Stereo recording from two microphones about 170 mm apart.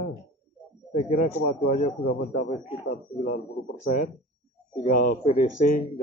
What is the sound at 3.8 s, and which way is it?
Speech, 50° left (ahead or behind).